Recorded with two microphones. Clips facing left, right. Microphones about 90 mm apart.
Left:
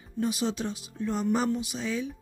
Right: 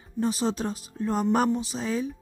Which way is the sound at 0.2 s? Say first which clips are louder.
Right 2 dB; 35° right (ahead or behind).